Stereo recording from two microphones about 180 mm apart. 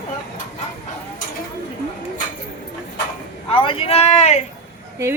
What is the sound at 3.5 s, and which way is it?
Speech, 30° left (ahead or behind).